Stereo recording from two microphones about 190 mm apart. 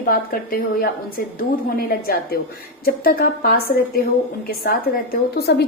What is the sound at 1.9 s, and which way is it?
A woman's voice, 50° left (ahead or behind).